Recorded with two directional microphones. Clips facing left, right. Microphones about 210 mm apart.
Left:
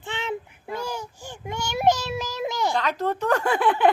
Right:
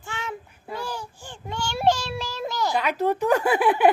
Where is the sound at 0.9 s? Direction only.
15° left (ahead or behind).